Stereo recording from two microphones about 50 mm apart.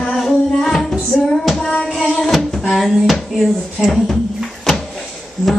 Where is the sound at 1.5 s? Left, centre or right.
Centre.